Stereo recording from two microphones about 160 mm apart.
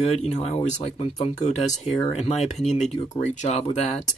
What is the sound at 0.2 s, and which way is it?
Speech, 40° left (ahead or behind).